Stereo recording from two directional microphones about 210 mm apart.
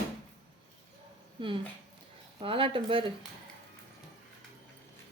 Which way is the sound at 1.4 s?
25° right (ahead or behind).